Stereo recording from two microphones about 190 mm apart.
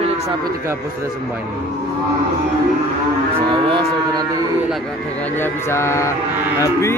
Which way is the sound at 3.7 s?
25° right (ahead or behind).